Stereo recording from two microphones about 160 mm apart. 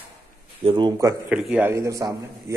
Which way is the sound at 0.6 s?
30° right (ahead or behind).